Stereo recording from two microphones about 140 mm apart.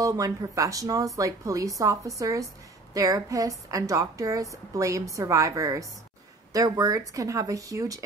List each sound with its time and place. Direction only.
0.0 s a woman's voice: 25° right (ahead or behind)